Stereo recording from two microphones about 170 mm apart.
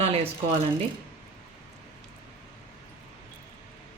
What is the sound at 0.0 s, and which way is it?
Speech, 35° right (ahead or behind).